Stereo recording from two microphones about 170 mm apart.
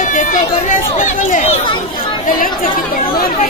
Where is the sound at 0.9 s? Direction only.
50° left (ahead or behind).